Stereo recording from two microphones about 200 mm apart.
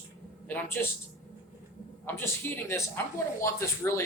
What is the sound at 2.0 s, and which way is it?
Speech, 10° left (ahead or behind).